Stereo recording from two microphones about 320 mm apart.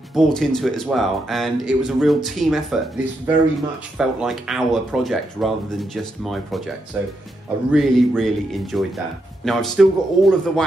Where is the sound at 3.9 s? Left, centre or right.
Centre.